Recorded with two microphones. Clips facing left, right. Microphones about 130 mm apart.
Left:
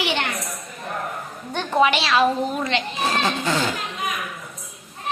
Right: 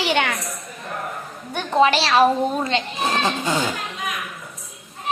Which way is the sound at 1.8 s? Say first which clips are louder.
Right 2 dB; 35° right (ahead or behind).